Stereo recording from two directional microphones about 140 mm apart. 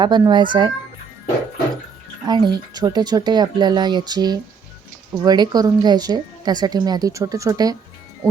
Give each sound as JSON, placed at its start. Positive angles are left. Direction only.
{"t": 0.0, "sound": "speech", "side_deg": -30}
{"t": 2.2, "sound": "a woman's voice", "side_deg": -30}